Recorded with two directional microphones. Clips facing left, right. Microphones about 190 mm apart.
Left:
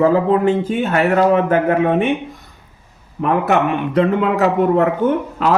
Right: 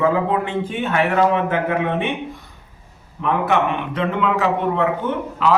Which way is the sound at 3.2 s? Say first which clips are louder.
Left 3 dB; 40° left (ahead or behind).